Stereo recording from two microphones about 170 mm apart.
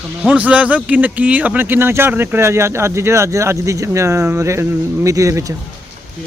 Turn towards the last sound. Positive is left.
turn(degrees=-20)  # may be behind; listen again after turning